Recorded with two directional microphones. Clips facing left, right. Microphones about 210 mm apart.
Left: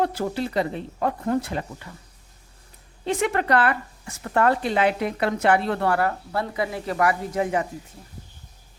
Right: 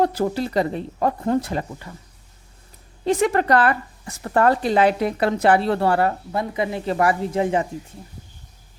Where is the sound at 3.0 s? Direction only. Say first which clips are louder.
Right 4 dB; 35° right (ahead or behind).